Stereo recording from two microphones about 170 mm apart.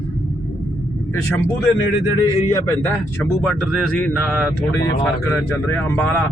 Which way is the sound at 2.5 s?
15° left (ahead or behind).